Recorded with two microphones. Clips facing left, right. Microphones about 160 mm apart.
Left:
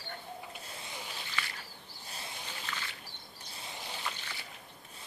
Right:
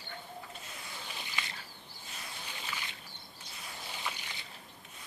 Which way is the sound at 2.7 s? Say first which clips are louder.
Left 1 dB; 10° right (ahead or behind).